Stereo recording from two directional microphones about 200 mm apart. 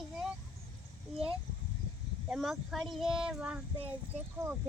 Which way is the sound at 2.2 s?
Centre (ahead or behind).